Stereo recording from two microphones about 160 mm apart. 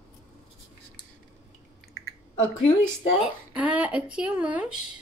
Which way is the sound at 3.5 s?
10° right (ahead or behind).